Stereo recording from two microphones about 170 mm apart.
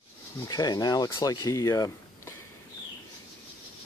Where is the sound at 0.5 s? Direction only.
20° left (ahead or behind).